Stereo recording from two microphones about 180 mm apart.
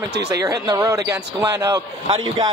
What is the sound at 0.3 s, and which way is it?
A man's voice, 20° right (ahead or behind).